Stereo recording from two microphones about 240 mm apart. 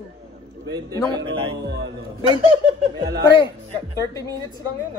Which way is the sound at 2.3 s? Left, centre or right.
Right.